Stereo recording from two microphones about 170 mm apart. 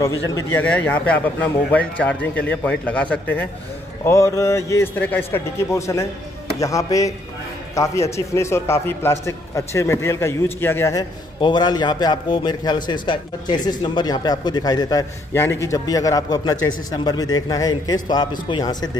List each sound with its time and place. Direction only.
0.3 s a man's voice: 10° left (ahead or behind)